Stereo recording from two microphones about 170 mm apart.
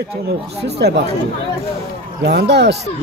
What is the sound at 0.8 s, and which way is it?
Speech, 90° right.